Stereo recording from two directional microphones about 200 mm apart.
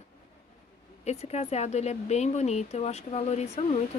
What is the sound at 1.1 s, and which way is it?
Speech, 35° left (ahead or behind).